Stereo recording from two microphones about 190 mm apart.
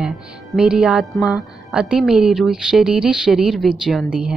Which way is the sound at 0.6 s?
5° right (ahead or behind).